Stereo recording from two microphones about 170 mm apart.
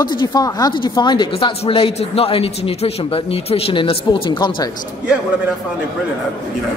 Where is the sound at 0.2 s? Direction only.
25° left (ahead or behind).